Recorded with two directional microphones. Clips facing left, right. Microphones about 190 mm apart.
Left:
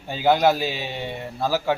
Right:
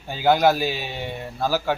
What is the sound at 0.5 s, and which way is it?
Speech, 25° left (ahead or behind).